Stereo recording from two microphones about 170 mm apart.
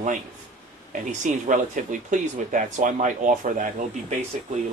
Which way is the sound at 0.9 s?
45° right (ahead or behind).